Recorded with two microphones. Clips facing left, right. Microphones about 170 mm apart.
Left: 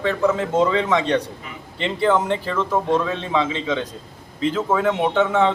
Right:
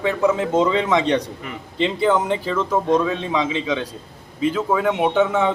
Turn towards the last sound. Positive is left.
turn(degrees=-15)  # may be behind; listen again after turning